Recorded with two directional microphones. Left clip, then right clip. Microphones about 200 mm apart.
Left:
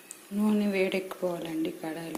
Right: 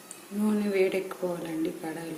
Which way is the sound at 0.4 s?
20° left (ahead or behind).